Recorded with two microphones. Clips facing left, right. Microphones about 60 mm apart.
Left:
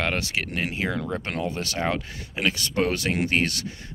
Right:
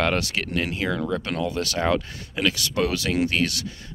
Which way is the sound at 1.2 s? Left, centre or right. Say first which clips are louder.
Right 3 dB; left.